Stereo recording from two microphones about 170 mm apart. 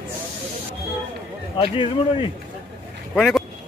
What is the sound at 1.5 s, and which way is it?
Speech, 30° left (ahead or behind).